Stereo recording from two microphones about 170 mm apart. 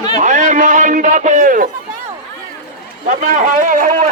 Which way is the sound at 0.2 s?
45° right (ahead or behind).